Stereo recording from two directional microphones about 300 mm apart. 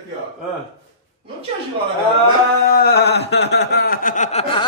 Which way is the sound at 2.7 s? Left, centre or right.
Left.